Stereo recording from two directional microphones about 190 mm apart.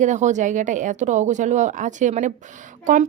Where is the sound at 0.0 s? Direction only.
40° right (ahead or behind).